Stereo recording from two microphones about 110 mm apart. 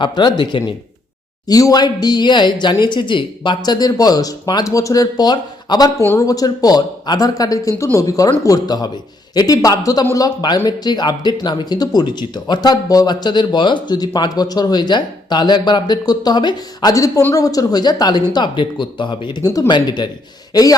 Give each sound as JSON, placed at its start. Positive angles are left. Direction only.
{"t": 0.0, "sound": "speech", "side_deg": 40}
{"t": 1.5, "sound": "speech", "side_deg": 35}
{"t": 16.9, "sound": "speech", "side_deg": 30}